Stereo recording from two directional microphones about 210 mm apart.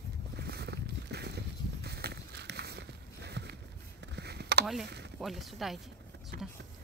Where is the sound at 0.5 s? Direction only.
50° right (ahead or behind).